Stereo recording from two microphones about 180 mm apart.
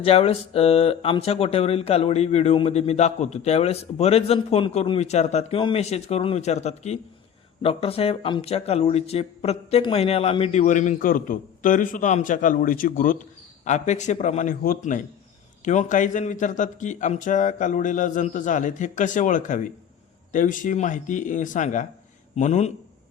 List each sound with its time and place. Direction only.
0.0 s speech: 35° left (ahead or behind)